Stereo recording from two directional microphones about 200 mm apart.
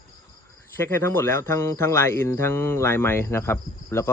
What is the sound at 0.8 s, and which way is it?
Speech, 10° left (ahead or behind).